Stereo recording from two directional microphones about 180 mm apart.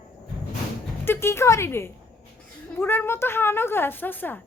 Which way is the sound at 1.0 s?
15° left (ahead or behind).